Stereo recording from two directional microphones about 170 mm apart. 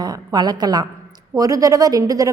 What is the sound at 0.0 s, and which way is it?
A woman's voice, 25° right (ahead or behind).